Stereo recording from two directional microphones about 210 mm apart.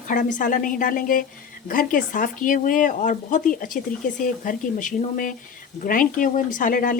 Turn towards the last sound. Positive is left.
turn(degrees=40)  # may be behind; listen again after turning